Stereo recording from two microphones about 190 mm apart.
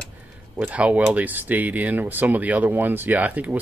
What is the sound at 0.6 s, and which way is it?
Speech, 5° right (ahead or behind).